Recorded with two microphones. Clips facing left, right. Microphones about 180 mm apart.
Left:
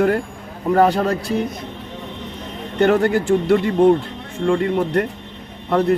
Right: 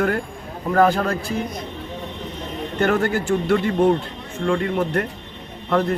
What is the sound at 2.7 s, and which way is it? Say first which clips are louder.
Speech: left 4 dB; 25° left (ahead or behind).